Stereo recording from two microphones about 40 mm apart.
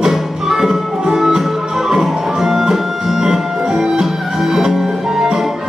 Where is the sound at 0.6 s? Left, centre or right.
Centre.